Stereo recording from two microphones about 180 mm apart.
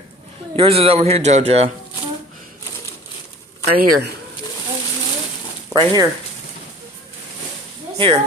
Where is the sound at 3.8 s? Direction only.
55° right (ahead or behind).